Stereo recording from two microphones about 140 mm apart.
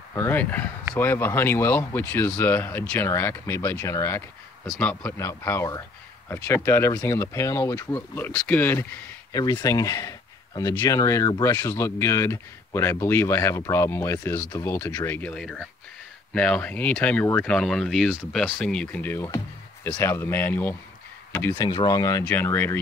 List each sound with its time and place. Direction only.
0.1 s speech: 15° left (ahead or behind)
4.6 s speech: 10° left (ahead or behind)
9.3 s speech: 30° left (ahead or behind); by 19.2 s 10° left (ahead or behind)
19.2 s speech: 25° left (ahead or behind)
21.5 s speech: 30° left (ahead or behind)
22.2 s speech: 15° left (ahead or behind)